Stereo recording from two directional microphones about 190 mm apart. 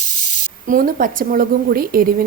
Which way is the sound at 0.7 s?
45° right (ahead or behind).